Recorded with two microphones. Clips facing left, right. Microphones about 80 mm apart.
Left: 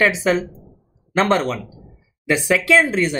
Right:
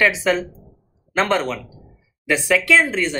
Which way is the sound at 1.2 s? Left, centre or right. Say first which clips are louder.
Left 2 dB; centre.